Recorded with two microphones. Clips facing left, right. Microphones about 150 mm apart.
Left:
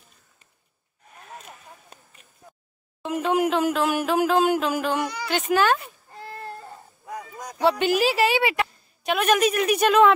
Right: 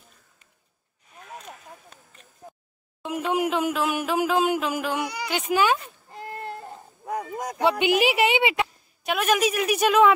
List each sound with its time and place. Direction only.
3.0 s a sound: 5° right (ahead or behind)
3.3 s speech: 10° right (ahead or behind)
6.0 s baby cry: 20° right (ahead or behind)
7.1 s a sound: 55° right (ahead or behind)
8.0 s a woman's voice: 20° right (ahead or behind)
9.0 s speech: 5° right (ahead or behind)